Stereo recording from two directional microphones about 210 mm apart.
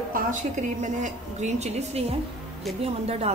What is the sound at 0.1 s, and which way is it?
A woman's voice, 35° right (ahead or behind).